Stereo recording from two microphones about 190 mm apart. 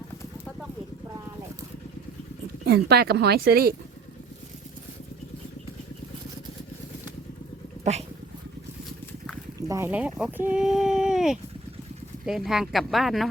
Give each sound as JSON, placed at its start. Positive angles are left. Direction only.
{"t": 2.6, "sound": "speech", "side_deg": -55}
{"t": 7.9, "sound": "speech", "side_deg": -40}
{"t": 9.6, "sound": "speech", "side_deg": -15}